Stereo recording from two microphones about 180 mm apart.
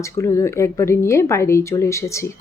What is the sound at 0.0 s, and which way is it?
Speech, 15° left (ahead or behind).